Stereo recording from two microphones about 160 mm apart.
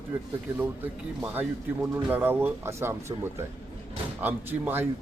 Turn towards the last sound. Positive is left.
turn(degrees=-15)  # may be behind; listen again after turning